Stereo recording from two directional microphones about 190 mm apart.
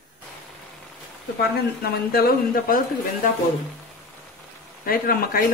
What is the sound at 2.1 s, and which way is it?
A man's voice, 50° left (ahead or behind).